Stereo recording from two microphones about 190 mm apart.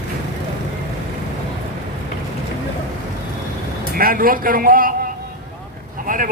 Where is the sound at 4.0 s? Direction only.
50° right (ahead or behind).